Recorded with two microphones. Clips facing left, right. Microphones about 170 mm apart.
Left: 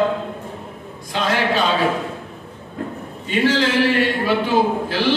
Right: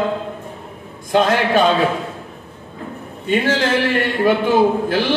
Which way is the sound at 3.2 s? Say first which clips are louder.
Right 1 dB; 50° right (ahead or behind).